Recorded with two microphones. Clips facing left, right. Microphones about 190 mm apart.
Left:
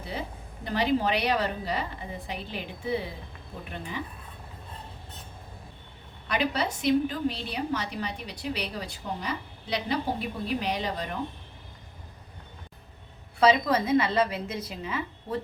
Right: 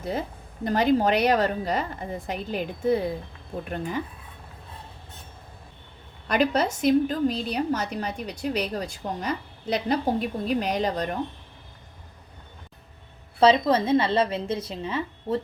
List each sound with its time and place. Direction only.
0.0 s a woman's voice: 45° right (ahead or behind)
6.2 s a woman's voice: 45° right (ahead or behind)
13.4 s a woman's voice: 30° right (ahead or behind)